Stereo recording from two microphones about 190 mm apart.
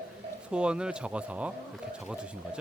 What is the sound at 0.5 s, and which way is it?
Speech, 5° right (ahead or behind).